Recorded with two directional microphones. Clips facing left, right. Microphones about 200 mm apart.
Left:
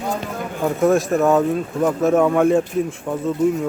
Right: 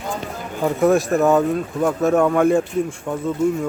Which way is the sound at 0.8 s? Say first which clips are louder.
Even; centre (ahead or behind).